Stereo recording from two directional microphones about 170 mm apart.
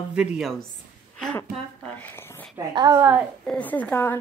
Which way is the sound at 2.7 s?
20° right (ahead or behind).